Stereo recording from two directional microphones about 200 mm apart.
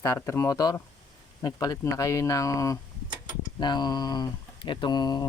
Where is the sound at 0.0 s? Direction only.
15° left (ahead or behind).